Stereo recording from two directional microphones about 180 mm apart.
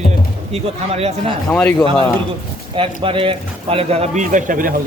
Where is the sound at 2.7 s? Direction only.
30° right (ahead or behind).